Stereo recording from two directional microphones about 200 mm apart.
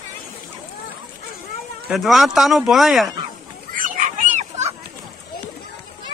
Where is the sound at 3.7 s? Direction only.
40° right (ahead or behind).